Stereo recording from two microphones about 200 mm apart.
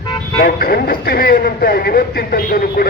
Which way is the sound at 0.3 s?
50° left (ahead or behind).